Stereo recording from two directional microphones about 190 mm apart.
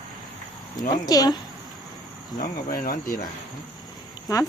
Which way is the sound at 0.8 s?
20° left (ahead or behind).